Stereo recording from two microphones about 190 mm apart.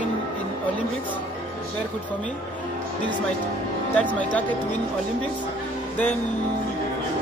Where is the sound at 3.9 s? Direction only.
5° left (ahead or behind).